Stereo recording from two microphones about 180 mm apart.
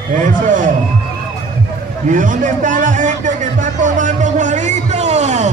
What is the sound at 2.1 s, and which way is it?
Music, 45° right (ahead or behind).